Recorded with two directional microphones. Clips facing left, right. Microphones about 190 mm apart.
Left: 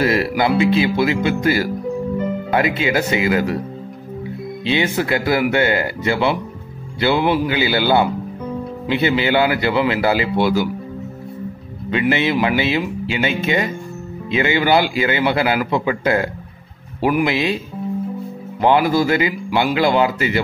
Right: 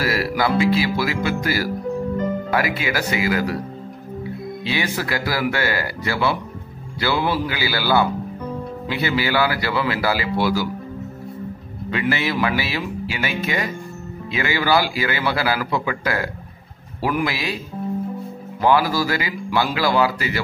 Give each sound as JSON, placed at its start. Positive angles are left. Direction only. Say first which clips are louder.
{"t": 0.0, "sound": "music", "louder": "left 4 dB", "side_deg": 25}
{"t": 0.6, "sound": "a man's voice", "louder": "left 4 dB", "side_deg": 20}
{"t": 4.6, "sound": "a man's voice", "louder": "left 6 dB", "side_deg": 25}
{"t": 11.9, "sound": "a man's voice", "louder": "left 5 dB", "side_deg": 20}
{"t": 18.6, "sound": "a man's voice", "louder": "left 3 dB", "side_deg": 20}